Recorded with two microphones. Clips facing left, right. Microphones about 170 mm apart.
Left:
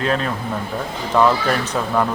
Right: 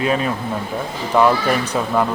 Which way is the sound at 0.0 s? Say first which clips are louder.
Right 2 dB; 10° right (ahead or behind).